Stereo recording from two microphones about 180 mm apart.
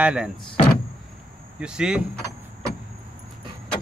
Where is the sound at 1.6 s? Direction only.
5° right (ahead or behind).